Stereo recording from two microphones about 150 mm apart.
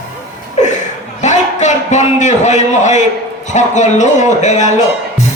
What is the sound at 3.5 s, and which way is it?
A man's voice, 55° left (ahead or behind).